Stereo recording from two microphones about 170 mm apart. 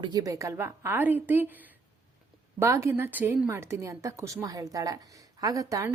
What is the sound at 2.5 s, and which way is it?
A woman's voice, 15° right (ahead or behind).